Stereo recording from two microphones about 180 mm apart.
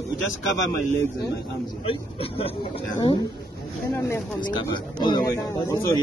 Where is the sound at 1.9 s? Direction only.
30° left (ahead or behind).